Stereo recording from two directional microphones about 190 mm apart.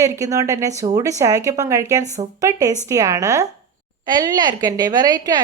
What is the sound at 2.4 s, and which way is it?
A woman's voice, 15° right (ahead or behind).